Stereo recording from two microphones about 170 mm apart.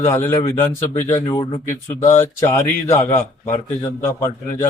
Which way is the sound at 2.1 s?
15° left (ahead or behind).